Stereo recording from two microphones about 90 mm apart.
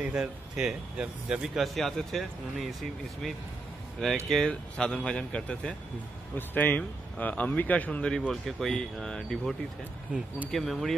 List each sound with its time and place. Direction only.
0.0 s speech: 10° right (ahead or behind); by 8.2 s 15° left (ahead or behind)
8.3 s speech: 5° left (ahead or behind)